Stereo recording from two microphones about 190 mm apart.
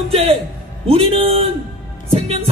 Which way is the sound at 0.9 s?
30° right (ahead or behind).